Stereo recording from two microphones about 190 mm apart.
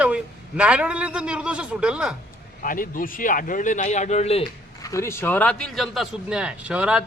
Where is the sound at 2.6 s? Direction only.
45° left (ahead or behind).